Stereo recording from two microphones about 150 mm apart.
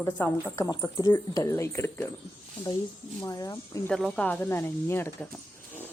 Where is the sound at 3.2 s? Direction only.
25° left (ahead or behind).